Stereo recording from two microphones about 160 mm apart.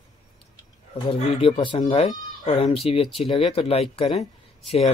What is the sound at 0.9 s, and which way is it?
Speech, 35° left (ahead or behind).